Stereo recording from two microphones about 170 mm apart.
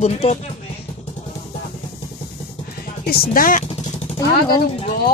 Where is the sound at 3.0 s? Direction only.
60° left (ahead or behind).